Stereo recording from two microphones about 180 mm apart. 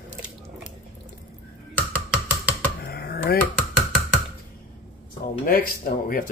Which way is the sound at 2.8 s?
60° left (ahead or behind).